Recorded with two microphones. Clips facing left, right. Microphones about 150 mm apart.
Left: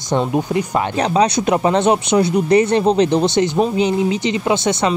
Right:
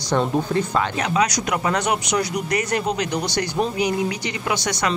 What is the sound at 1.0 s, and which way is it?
Speech, 30° left (ahead or behind).